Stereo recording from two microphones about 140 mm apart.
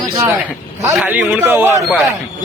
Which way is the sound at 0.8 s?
10° right (ahead or behind).